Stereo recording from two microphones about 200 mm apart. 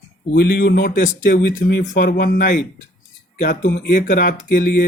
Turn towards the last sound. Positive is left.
turn(degrees=40)  # may be behind; listen again after turning